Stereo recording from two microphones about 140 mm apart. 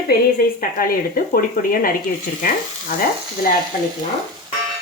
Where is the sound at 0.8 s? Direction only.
90° left.